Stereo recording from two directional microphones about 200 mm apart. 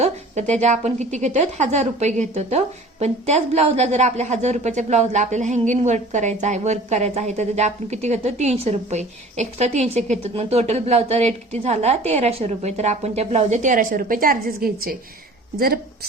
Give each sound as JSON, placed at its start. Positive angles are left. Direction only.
{"t": 0.0, "sound": "a woman's voice", "side_deg": -35}